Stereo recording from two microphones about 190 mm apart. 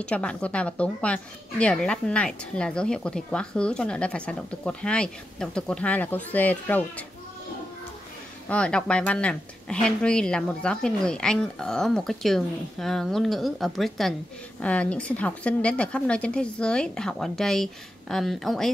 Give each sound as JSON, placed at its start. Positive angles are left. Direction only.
{"t": 0.0, "sound": "speech", "side_deg": 5}
{"t": 8.5, "sound": "speech", "side_deg": 5}